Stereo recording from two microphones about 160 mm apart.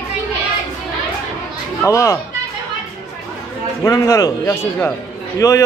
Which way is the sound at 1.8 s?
20° left (ahead or behind).